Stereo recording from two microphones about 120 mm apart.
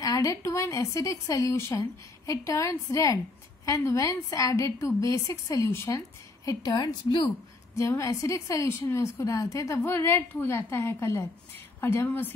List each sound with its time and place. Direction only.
0.0 s a woman's voice: 30° left (ahead or behind)
7.7 s a woman's voice: 25° left (ahead or behind)